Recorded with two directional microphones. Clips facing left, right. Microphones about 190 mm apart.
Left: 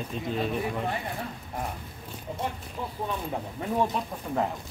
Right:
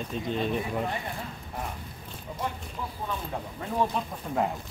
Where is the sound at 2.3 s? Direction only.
25° left (ahead or behind).